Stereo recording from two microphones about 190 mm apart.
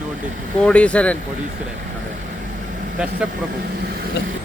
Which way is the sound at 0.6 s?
5° left (ahead or behind).